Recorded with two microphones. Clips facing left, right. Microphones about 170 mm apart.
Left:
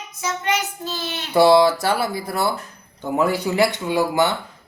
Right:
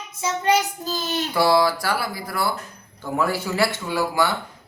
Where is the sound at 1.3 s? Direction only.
25° left (ahead or behind).